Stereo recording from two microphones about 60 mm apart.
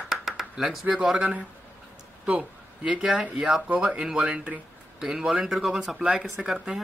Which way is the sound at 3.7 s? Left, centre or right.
Centre.